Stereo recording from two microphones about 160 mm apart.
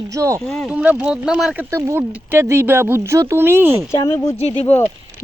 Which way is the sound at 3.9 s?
20° left (ahead or behind).